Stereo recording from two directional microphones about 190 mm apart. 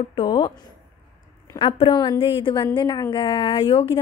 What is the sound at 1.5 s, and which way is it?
A woman's voice, 25° left (ahead or behind).